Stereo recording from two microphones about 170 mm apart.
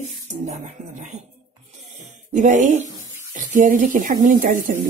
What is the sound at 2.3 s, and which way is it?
Speech, 45° right (ahead or behind).